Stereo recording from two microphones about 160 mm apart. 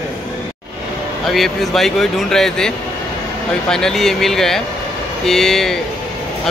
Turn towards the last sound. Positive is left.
turn(degrees=5)  # may be behind; listen again after turning